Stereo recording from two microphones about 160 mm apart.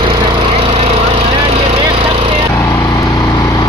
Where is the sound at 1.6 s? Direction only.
40° right (ahead or behind).